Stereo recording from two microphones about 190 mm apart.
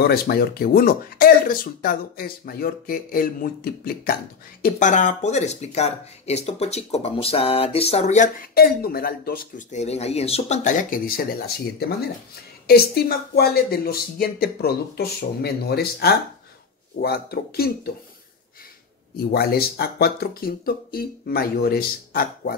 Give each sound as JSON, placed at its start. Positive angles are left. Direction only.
{"t": 0.0, "sound": "speech", "side_deg": 55}
{"t": 4.6, "sound": "speech", "side_deg": 40}
{"t": 19.3, "sound": "speech", "side_deg": 55}